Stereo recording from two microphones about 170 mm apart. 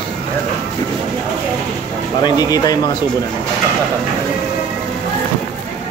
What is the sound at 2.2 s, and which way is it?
Speech, 25° left (ahead or behind).